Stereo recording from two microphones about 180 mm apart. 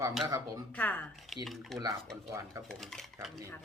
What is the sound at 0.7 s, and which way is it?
Speech, 10° left (ahead or behind).